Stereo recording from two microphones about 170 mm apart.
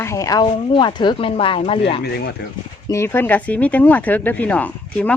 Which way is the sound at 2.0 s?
75° left (ahead or behind).